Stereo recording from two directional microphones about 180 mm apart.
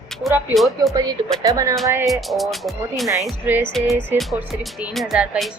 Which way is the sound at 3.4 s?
10° right (ahead or behind).